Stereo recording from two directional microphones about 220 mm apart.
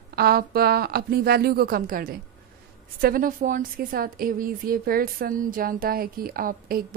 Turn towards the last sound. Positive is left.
turn(degrees=-40)  # may be behind; listen again after turning